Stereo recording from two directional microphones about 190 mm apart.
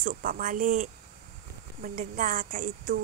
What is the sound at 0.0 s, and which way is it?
A woman's voice, 50° right (ahead or behind).